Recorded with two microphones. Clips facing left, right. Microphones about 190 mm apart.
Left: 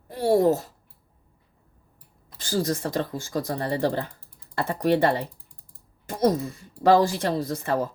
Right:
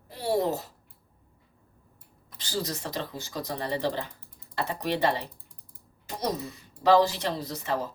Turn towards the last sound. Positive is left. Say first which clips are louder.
# left 5 dB
turn(degrees=50)  # may be behind; listen again after turning